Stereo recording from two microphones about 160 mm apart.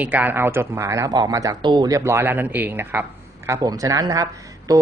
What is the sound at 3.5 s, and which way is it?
Speech, 25° right (ahead or behind).